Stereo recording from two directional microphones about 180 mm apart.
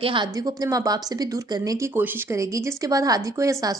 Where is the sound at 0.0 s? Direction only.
25° right (ahead or behind).